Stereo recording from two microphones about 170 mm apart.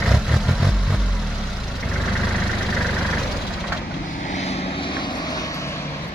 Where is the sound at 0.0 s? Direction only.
Centre (ahead or behind).